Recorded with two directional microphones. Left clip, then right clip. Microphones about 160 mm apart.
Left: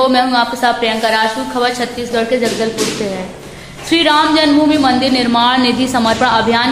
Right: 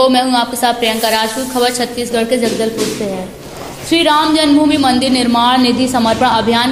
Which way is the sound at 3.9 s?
20° right (ahead or behind).